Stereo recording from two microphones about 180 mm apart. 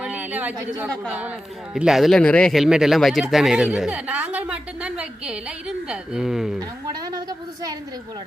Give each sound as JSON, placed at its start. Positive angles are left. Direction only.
{"t": 0.0, "sound": "a sound", "side_deg": -10}
{"t": 1.7, "sound": "speech", "side_deg": -5}
{"t": 6.6, "sound": "a woman's voice", "side_deg": -20}